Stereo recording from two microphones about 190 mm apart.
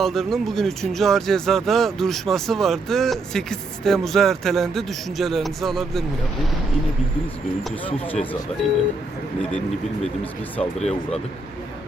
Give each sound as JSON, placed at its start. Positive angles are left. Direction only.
{"t": 0.0, "sound": "speech", "side_deg": 0}
{"t": 10.6, "sound": "speech", "side_deg": 35}